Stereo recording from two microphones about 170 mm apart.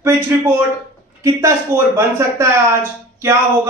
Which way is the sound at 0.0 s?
15° right (ahead or behind).